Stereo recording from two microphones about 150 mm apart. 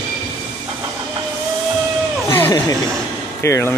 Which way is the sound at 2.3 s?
20° left (ahead or behind).